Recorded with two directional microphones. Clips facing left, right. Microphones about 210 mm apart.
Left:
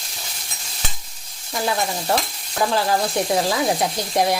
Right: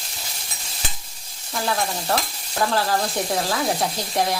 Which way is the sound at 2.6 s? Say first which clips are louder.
Left 2 dB; 15° left (ahead or behind).